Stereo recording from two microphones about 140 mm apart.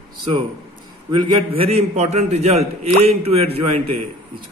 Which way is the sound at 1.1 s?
40° right (ahead or behind).